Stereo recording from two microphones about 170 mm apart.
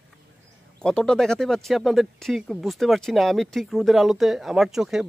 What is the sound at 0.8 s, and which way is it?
Speech, 5° left (ahead or behind).